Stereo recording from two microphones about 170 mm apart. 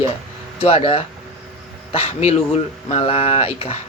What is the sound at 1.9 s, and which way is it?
A man's voice, 35° left (ahead or behind).